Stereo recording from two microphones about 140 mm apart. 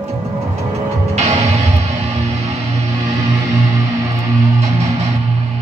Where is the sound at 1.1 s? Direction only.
50° right (ahead or behind).